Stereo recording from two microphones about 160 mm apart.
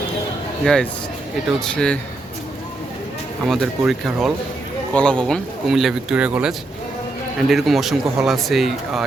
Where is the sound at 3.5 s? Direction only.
Centre (ahead or behind).